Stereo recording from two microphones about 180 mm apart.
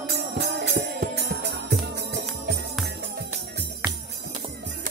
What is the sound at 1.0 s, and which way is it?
Music, 65° right (ahead or behind).